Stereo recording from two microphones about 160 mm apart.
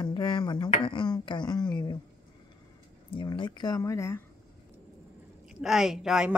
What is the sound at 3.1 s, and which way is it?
Speech, 30° left (ahead or behind).